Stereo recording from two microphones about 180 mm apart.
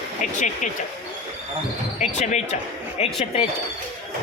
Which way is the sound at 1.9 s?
40° left (ahead or behind).